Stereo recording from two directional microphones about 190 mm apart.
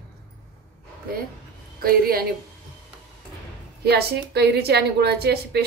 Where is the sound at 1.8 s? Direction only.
50° right (ahead or behind).